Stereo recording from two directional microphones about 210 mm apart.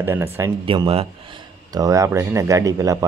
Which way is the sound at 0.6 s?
25° right (ahead or behind).